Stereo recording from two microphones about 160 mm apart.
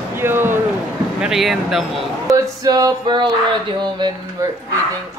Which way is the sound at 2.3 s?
25° right (ahead or behind).